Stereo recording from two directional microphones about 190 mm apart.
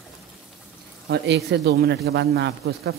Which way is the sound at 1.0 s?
65° right (ahead or behind).